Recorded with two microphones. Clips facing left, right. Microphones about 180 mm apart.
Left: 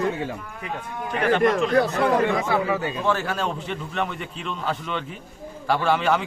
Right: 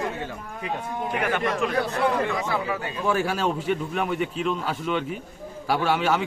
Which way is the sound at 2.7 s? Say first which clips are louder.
Left 5 dB; 25° left (ahead or behind).